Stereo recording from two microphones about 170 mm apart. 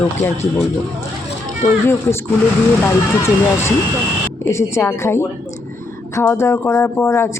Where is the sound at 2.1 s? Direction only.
15° left (ahead or behind).